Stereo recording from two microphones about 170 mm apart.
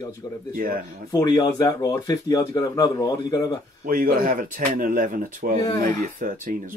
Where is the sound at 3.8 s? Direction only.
55° right (ahead or behind).